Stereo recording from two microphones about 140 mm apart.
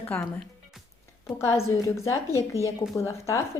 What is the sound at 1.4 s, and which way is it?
A woman's voice, 20° left (ahead or behind).